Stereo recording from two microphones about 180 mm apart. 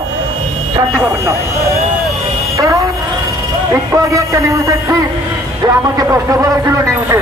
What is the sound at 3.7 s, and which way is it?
Speech, 20° right (ahead or behind).